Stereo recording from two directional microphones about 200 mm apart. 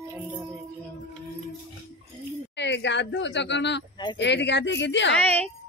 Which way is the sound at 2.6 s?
60° left (ahead or behind).